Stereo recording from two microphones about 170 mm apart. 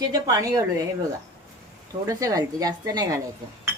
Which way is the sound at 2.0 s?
20° right (ahead or behind).